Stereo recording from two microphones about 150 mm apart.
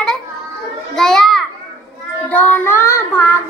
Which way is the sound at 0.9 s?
5° left (ahead or behind).